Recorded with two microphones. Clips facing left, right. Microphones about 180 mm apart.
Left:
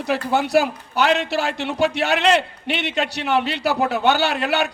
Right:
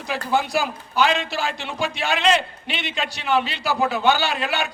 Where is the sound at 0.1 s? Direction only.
65° left (ahead or behind).